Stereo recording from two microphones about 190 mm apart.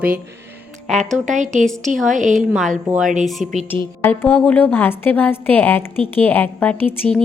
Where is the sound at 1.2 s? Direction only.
40° right (ahead or behind).